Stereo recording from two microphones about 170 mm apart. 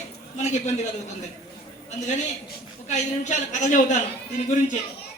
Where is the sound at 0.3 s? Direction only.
45° left (ahead or behind).